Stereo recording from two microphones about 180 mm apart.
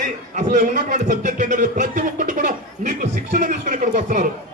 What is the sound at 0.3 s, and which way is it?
A man's voice, 45° right (ahead or behind).